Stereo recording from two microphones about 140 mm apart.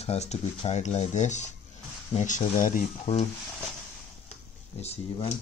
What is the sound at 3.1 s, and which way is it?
Speech, 50° left (ahead or behind).